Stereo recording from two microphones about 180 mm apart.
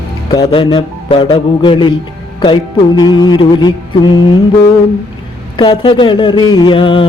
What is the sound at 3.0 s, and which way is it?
Mantra, 25° left (ahead or behind).